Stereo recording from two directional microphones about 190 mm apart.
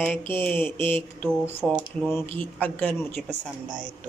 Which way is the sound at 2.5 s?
10° left (ahead or behind).